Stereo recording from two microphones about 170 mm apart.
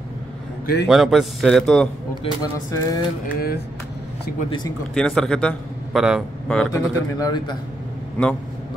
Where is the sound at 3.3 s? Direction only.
65° left (ahead or behind).